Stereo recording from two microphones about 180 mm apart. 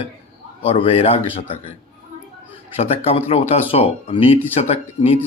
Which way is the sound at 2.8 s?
35° left (ahead or behind).